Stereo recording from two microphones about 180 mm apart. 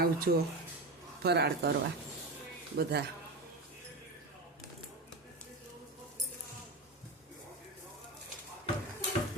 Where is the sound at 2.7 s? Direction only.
65° right (ahead or behind).